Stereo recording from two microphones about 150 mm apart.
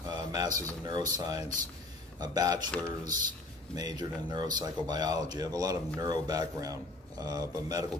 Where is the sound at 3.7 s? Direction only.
25° right (ahead or behind).